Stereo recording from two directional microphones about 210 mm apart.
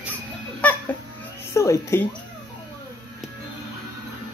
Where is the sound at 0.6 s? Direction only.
5° left (ahead or behind).